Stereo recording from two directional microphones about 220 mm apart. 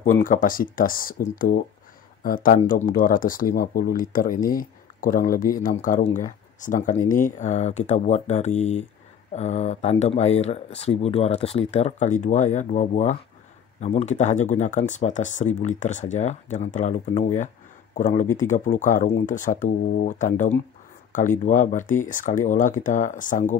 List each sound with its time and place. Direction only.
0.0 s speech: 35° left (ahead or behind)
17.9 s speech: 35° left (ahead or behind)